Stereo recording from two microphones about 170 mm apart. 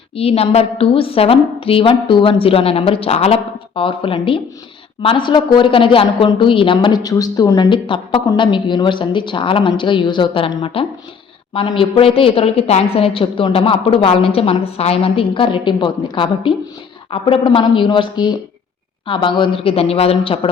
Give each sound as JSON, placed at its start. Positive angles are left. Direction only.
{"t": 0.2, "sound": "a woman's voice", "side_deg": 35}